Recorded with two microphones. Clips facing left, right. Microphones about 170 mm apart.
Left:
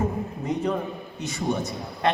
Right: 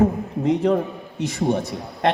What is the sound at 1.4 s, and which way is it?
Speech, 65° right (ahead or behind).